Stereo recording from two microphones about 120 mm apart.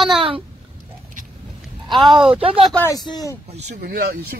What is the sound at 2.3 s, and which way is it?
Speech, 50° right (ahead or behind).